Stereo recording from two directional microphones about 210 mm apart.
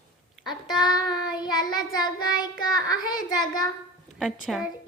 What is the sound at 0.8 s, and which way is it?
Child singing, 20° left (ahead or behind).